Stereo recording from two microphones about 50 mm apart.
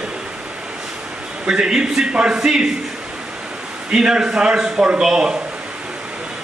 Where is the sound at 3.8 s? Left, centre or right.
Centre.